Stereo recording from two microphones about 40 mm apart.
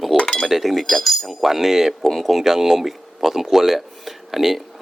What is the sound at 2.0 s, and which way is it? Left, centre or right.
Speech, centre.